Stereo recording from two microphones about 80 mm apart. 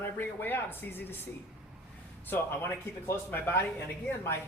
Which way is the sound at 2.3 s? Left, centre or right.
Left.